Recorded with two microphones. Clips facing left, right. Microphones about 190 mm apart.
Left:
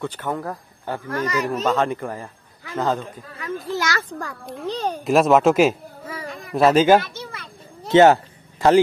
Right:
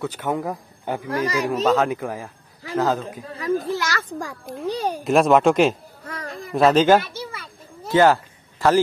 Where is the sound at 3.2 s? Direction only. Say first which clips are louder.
Right 7 dB; 30° right (ahead or behind).